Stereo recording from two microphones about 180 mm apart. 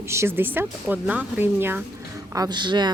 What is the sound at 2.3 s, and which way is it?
Speech, 20° right (ahead or behind).